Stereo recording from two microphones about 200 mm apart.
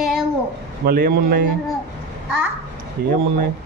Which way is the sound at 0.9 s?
50° right (ahead or behind).